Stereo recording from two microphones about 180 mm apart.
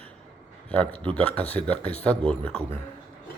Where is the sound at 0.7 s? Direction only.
10° left (ahead or behind).